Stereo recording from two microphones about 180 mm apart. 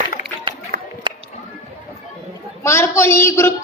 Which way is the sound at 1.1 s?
25° right (ahead or behind).